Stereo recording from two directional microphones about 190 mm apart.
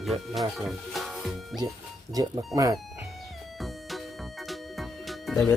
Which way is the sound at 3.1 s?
Centre (ahead or behind).